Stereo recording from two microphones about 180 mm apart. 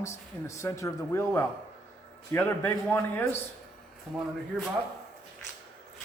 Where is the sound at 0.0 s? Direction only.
15° left (ahead or behind).